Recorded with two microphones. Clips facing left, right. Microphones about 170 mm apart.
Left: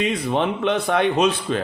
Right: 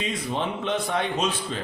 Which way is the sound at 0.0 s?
65° left (ahead or behind).